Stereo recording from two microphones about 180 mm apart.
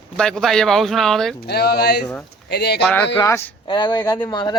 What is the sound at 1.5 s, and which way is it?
Speech, 60° left (ahead or behind).